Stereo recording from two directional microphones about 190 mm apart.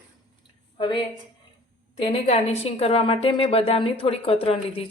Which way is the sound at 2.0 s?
35° left (ahead or behind).